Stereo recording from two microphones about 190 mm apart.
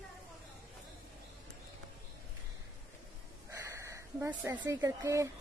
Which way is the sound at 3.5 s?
15° right (ahead or behind).